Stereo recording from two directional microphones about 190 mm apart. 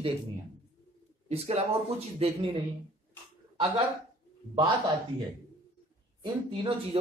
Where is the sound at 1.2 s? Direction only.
35° right (ahead or behind).